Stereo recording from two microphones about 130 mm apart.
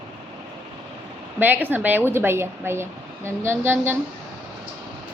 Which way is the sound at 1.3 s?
15° right (ahead or behind).